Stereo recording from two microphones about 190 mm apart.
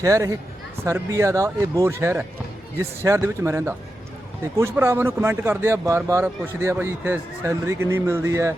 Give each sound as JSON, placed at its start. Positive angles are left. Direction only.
{"t": 0.0, "sound": "speech", "side_deg": -15}